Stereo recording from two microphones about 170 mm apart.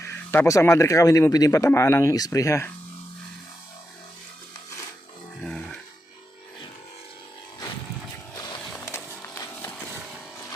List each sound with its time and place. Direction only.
0.0 s speech: 15° left (ahead or behind)
5.5 s music: 5° left (ahead or behind)
8.8 s horse: 15° left (ahead or behind)